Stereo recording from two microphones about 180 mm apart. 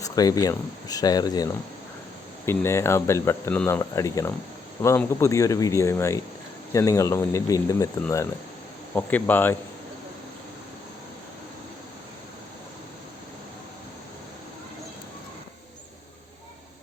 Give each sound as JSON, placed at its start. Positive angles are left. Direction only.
{"t": 0.0, "sound": "speech", "side_deg": 20}
{"t": 9.0, "sound": "speech", "side_deg": 10}